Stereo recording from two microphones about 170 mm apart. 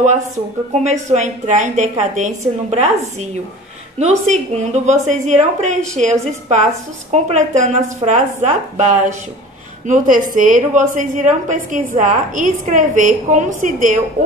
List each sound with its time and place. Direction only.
0.8 s a woman's voice: 45° right (ahead or behind)